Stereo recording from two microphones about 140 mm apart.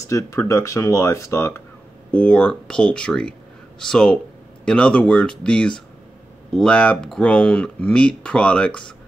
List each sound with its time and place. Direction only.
0.1 s speech: 20° left (ahead or behind)
2.0 s speech: 10° left (ahead or behind)